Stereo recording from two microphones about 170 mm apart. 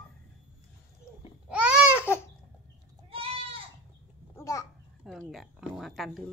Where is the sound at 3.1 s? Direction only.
35° right (ahead or behind).